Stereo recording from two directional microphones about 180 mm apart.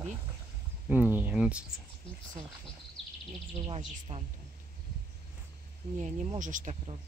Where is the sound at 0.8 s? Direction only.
10° right (ahead or behind).